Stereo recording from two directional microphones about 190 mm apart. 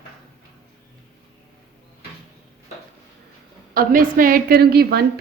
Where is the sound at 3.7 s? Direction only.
50° right (ahead or behind).